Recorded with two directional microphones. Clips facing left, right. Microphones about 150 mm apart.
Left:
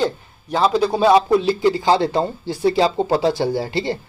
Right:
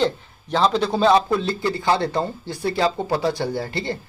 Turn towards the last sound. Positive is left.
turn(degrees=15)  # may be behind; listen again after turning